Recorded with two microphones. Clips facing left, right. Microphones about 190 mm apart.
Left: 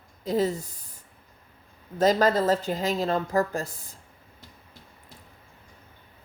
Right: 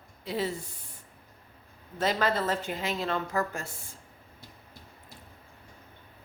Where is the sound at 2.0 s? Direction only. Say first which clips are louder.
Left 7 dB; 40° left (ahead or behind).